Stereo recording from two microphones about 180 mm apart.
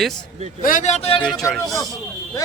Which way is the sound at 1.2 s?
Centre (ahead or behind).